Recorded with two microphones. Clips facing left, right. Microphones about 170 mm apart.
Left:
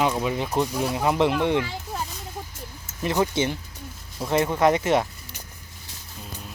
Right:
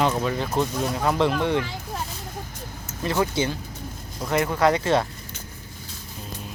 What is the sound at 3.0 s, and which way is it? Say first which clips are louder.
Speech: left 1 dB; 20° left (ahead or behind).